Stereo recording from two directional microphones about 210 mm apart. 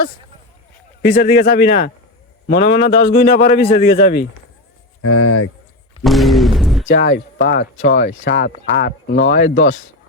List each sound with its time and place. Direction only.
1.0 s speech: 45° left (ahead or behind)
5.0 s speech: 90° left
6.0 s a sound: centre (ahead or behind)
6.8 s speech: 50° left (ahead or behind)
9.2 s speech: 60° left (ahead or behind)